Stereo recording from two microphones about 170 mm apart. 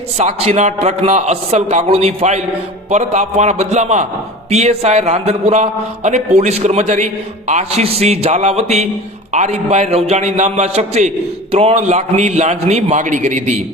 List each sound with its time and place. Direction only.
0.2 s a man's voice: 40° right (ahead or behind)